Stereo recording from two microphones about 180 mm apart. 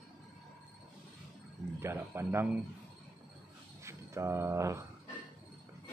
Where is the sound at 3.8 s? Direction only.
15° right (ahead or behind).